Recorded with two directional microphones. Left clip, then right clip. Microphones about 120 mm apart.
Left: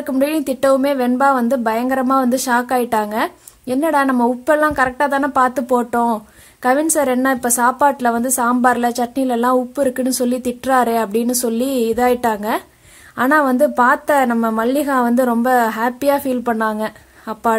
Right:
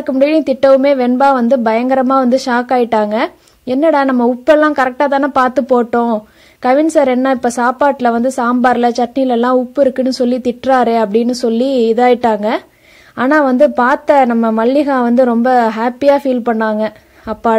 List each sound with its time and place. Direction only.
0.2 s a woman's voice: 25° right (ahead or behind)